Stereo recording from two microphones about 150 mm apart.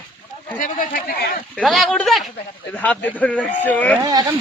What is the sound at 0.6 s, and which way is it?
Speech, 65° left (ahead or behind).